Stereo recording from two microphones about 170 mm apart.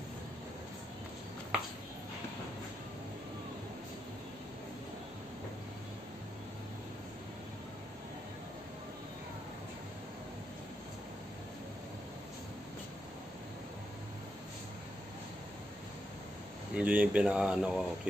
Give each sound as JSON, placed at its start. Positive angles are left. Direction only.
{"t": 16.7, "sound": "speech", "side_deg": -5}